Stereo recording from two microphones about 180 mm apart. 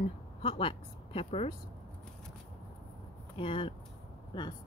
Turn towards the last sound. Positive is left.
turn(degrees=25)  # may be behind; listen again after turning